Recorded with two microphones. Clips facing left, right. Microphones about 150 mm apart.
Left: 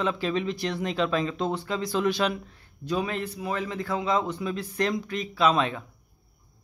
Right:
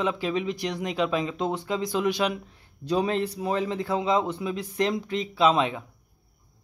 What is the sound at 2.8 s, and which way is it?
A man's voice, 30° right (ahead or behind).